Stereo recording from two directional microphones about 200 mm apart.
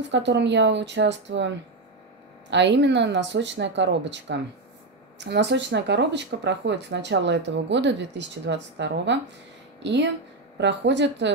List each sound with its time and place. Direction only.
0.0 s speech: 60° right (ahead or behind)
2.5 s speech: 60° right (ahead or behind)